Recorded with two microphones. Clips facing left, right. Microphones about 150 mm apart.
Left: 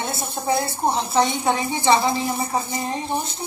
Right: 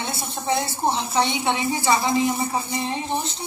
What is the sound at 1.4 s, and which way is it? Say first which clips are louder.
Speech: left 1 dB; 40° left (ahead or behind).